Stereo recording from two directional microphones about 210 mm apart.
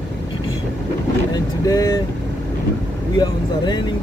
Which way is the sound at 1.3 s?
20° left (ahead or behind).